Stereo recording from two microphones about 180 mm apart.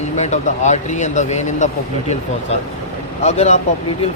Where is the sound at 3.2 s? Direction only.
40° left (ahead or behind).